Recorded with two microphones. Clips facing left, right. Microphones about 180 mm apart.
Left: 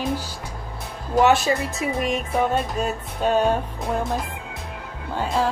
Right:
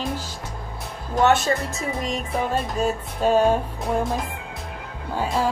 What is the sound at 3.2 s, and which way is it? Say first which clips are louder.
Music: right 2 dB; 5° right (ahead or behind).